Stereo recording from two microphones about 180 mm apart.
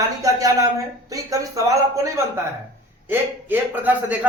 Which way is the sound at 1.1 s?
20° right (ahead or behind).